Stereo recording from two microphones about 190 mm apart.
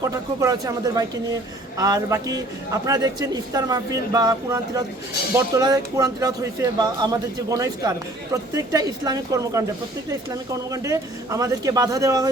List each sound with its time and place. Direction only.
0.0 s speech: 15° right (ahead or behind)